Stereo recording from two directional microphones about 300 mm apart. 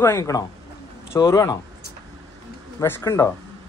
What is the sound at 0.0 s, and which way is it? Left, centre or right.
Speech, centre.